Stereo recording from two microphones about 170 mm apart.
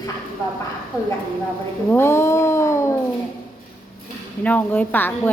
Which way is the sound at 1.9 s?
15° left (ahead or behind).